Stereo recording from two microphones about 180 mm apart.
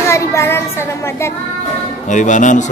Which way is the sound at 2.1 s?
45° left (ahead or behind).